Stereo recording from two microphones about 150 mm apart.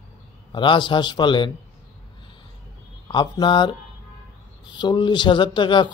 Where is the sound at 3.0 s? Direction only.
30° left (ahead or behind).